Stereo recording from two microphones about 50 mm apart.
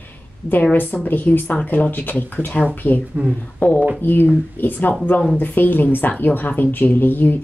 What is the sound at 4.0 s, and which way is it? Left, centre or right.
Speech, left.